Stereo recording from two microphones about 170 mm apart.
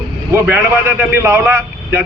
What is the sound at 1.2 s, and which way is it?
Speech, 15° right (ahead or behind).